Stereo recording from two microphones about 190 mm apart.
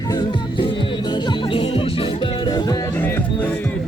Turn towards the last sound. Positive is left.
turn(degrees=10)  # may be behind; listen again after turning